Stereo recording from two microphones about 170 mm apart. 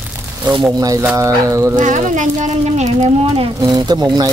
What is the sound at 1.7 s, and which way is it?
Speech, 45° right (ahead or behind).